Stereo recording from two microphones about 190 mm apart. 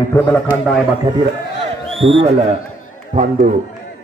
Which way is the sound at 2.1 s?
35° right (ahead or behind).